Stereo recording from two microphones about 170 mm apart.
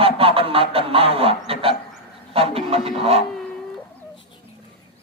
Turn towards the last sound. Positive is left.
turn(degrees=-35)  # may be behind; listen again after turning